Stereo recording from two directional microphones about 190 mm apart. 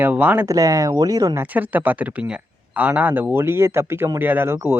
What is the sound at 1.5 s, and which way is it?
Speech, 10° right (ahead or behind).